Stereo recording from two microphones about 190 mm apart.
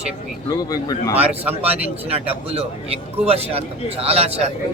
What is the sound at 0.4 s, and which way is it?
Speech, 20° left (ahead or behind).